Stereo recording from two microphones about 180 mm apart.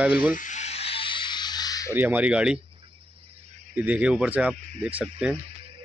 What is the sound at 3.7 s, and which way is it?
Speech, 10° right (ahead or behind).